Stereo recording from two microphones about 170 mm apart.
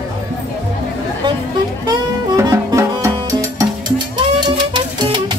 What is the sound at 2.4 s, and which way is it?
Music, 15° right (ahead or behind).